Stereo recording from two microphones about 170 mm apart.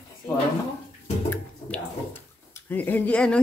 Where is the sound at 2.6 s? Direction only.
10° left (ahead or behind).